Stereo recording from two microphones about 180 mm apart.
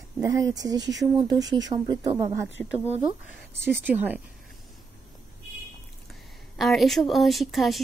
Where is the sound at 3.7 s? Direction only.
10° right (ahead or behind).